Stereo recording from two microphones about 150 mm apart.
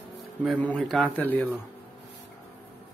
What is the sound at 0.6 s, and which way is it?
A man's voice, 5° left (ahead or behind).